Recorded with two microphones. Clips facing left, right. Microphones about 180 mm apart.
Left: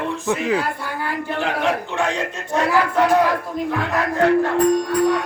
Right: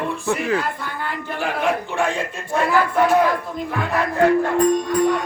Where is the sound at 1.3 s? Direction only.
10° right (ahead or behind).